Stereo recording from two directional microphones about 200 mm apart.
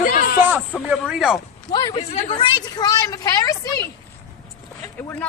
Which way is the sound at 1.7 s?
20° left (ahead or behind).